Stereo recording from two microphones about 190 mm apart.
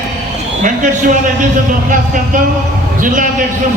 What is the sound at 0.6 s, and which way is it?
Speech, 40° right (ahead or behind).